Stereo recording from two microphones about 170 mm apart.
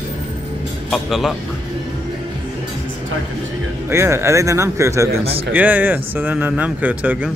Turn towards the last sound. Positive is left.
turn(degrees=-10)  # may be behind; listen again after turning